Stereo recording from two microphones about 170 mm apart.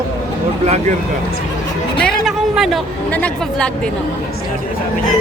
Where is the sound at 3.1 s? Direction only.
5° left (ahead or behind).